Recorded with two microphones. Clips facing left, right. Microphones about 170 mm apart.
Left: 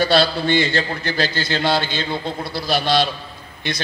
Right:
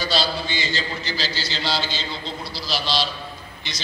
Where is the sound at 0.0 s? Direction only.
60° left (ahead or behind).